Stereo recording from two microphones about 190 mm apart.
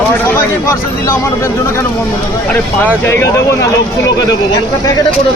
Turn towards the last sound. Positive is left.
turn(degrees=15)  # may be behind; listen again after turning